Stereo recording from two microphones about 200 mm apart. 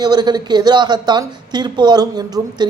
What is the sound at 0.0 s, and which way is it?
A woman's voice, 20° right (ahead or behind).